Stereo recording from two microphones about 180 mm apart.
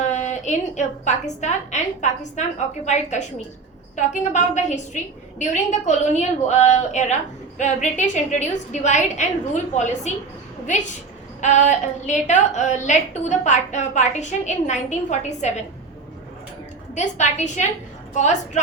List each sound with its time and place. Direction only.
0.1 s a woman's voice: 40° left (ahead or behind)
11.3 s a woman's voice: 45° left (ahead or behind)
16.9 s a woman's voice: 40° left (ahead or behind)